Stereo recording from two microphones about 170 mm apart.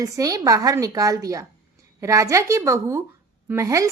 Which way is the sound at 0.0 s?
20° right (ahead or behind).